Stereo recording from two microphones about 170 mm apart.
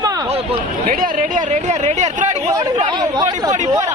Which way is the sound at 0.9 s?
50° right (ahead or behind).